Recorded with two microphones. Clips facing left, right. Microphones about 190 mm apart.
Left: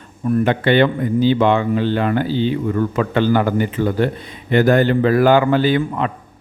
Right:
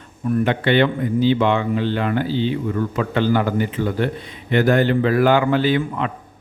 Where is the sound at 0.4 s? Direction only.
40° left (ahead or behind).